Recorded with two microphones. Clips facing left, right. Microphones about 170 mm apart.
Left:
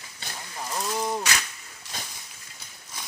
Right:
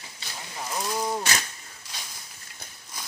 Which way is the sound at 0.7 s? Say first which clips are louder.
Even; centre (ahead or behind).